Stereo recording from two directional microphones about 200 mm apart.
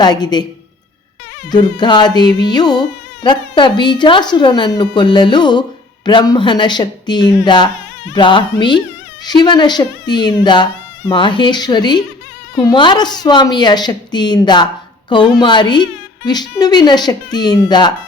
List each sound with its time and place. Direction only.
0.0 s a woman's voice: 20° left (ahead or behind)
1.5 s a woman's voice: 20° left (ahead or behind)